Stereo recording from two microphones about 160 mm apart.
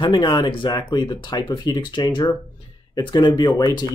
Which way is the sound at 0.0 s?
30° left (ahead or behind).